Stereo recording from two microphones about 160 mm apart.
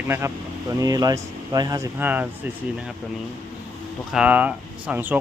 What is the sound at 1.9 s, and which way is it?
Speech, 10° right (ahead or behind).